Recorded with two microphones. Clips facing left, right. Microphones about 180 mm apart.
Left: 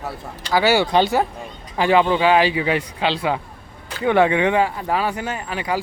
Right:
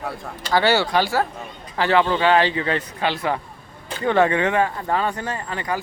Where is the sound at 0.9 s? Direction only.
20° left (ahead or behind).